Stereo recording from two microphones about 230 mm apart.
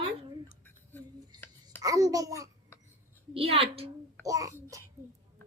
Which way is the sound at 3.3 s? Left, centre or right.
Right.